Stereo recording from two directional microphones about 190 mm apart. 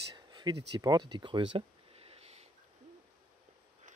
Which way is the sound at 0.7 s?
20° right (ahead or behind).